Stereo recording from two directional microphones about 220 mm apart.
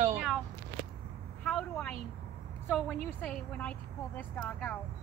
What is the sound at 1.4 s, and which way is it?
Speech, 5° left (ahead or behind).